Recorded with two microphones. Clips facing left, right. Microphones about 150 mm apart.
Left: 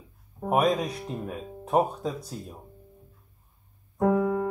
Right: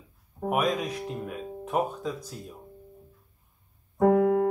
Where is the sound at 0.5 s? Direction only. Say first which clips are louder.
Left 3 dB; 35° left (ahead or behind).